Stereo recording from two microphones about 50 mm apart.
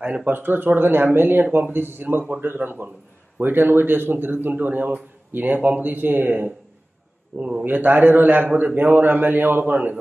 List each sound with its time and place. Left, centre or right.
0.0 s a man's voice: right